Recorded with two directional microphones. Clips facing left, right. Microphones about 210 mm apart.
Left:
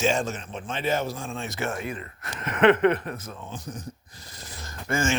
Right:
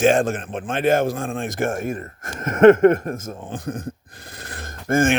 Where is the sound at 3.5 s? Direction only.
55° right (ahead or behind).